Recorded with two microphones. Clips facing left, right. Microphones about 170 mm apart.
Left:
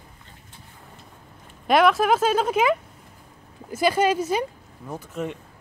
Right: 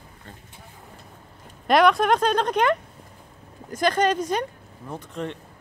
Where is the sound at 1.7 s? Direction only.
Centre (ahead or behind).